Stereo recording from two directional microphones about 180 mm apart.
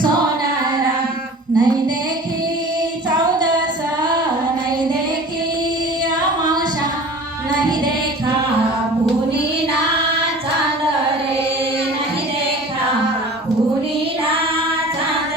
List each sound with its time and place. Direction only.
1.5 s music: 25° right (ahead or behind)
3.1 s child singing: 25° right (ahead or behind)